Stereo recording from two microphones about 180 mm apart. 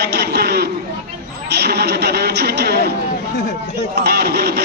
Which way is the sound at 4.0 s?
60° right (ahead or behind).